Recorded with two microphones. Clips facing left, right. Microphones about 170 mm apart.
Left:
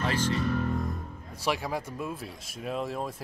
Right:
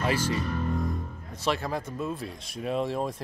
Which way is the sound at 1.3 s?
10° left (ahead or behind).